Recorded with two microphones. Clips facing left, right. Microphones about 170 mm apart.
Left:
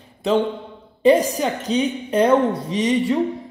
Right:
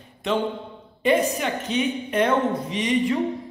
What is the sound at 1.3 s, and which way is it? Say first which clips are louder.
A man's voice: left 4 dB; 35° left (ahead or behind).